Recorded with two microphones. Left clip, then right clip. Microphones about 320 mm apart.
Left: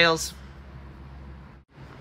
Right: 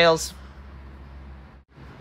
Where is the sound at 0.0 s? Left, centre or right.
Centre.